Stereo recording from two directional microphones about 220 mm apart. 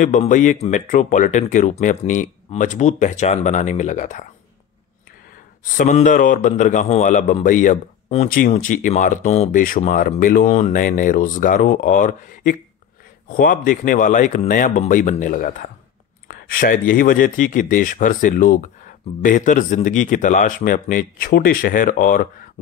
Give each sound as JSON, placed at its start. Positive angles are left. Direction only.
{"t": 0.0, "sound": "a man's voice", "side_deg": 35}
{"t": 5.6, "sound": "a man's voice", "side_deg": 35}